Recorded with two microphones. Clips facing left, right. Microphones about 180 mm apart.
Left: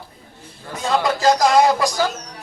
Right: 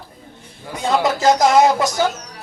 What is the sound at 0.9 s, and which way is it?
Speech, 20° right (ahead or behind).